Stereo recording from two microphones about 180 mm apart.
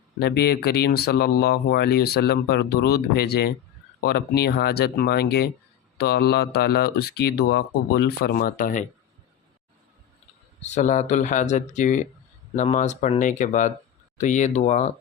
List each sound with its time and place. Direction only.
0.2 s speech: 60° left (ahead or behind); by 8.9 s 45° left (ahead or behind)
10.6 s speech: 40° left (ahead or behind)